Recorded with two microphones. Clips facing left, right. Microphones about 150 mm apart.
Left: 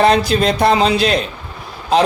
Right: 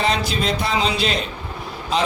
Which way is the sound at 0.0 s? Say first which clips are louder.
Left 8 dB; 60° left (ahead or behind).